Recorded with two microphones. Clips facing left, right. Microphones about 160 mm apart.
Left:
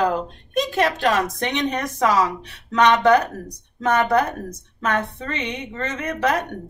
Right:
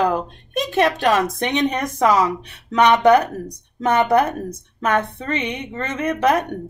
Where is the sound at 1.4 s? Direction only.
15° right (ahead or behind).